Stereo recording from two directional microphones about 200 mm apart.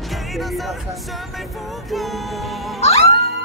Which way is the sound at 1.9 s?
Centre (ahead or behind).